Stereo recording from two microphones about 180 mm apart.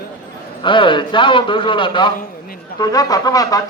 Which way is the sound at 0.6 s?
25° left (ahead or behind).